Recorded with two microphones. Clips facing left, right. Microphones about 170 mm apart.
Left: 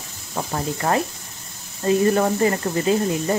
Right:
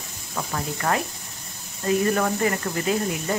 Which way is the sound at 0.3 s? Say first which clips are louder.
Left 4 dB; 30° left (ahead or behind).